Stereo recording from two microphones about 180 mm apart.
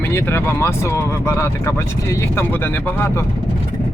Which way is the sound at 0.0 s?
15° left (ahead or behind).